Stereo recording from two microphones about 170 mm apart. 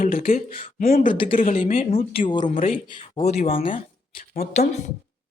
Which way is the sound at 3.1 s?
40° left (ahead or behind).